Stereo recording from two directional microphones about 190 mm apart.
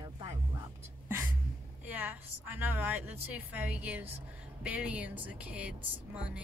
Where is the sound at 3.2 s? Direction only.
10° right (ahead or behind).